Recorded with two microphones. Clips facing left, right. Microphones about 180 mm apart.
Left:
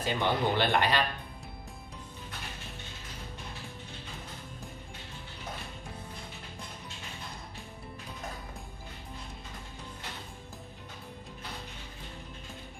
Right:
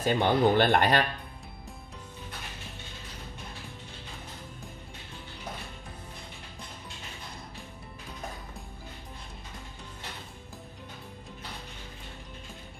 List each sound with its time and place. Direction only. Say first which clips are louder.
0.0 s speech: right 5 dB; 50° right (ahead or behind)